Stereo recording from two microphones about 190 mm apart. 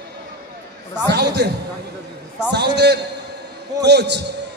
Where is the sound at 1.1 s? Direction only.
60° right (ahead or behind).